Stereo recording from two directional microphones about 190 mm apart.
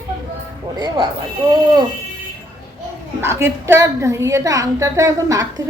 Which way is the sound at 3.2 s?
15° right (ahead or behind).